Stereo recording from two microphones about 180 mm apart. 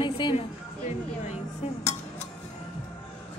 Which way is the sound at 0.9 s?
40° left (ahead or behind).